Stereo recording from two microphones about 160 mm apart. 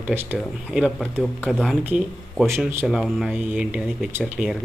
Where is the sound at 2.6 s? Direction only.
15° right (ahead or behind).